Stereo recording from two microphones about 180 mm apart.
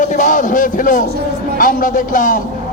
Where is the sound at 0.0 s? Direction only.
45° left (ahead or behind).